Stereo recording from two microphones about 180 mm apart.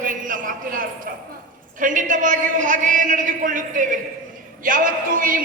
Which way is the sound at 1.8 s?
45° right (ahead or behind).